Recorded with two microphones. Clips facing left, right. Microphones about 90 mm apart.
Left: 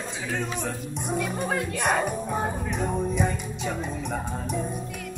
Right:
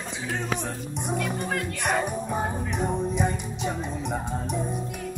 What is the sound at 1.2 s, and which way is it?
Music, 15° left (ahead or behind).